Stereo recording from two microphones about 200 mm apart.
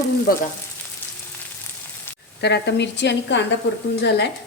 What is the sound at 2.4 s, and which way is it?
A woman's voice, 60° left (ahead or behind).